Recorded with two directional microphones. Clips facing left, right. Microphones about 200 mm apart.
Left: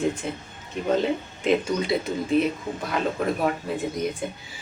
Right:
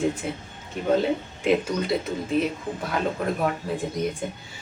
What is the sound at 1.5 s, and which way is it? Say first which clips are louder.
Speech: even; 5° right (ahead or behind).